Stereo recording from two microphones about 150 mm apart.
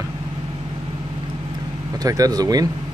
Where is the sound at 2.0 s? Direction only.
25° right (ahead or behind).